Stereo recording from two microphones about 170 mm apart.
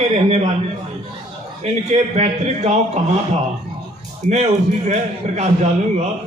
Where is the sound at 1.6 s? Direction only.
40° right (ahead or behind).